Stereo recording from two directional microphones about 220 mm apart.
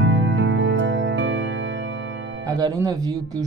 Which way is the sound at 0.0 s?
55° right (ahead or behind).